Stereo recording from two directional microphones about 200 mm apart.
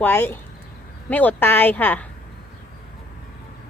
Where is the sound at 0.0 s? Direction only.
10° left (ahead or behind).